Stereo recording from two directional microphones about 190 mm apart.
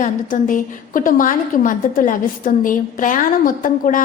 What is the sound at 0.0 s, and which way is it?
A woman's voice, 45° left (ahead or behind).